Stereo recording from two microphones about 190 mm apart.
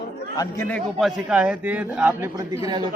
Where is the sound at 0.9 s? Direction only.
Centre (ahead or behind).